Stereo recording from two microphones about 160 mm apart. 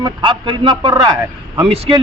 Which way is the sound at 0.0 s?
30° right (ahead or behind).